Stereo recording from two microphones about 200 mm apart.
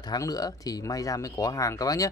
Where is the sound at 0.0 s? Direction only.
20° left (ahead or behind).